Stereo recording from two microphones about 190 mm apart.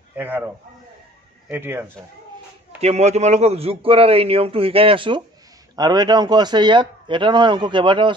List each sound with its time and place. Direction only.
0.1 s a man's voice: 10° right (ahead or behind)
1.5 s speech: 10° right (ahead or behind)
2.8 s a man's voice: 35° right (ahead or behind)